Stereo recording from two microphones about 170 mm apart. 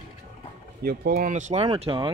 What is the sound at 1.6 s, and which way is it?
Speech, 30° right (ahead or behind).